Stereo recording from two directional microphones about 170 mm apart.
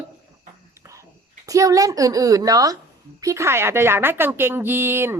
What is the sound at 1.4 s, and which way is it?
A woman's voice, 20° right (ahead or behind).